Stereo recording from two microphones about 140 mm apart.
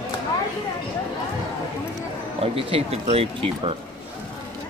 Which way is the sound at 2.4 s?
40° right (ahead or behind).